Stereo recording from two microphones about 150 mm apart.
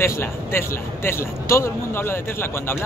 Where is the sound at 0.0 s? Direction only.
15° left (ahead or behind).